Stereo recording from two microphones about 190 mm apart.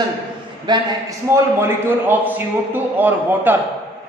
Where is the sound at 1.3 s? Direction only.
10° right (ahead or behind).